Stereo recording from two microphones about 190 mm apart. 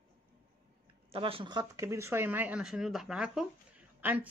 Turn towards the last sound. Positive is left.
turn(degrees=-10)  # may be behind; listen again after turning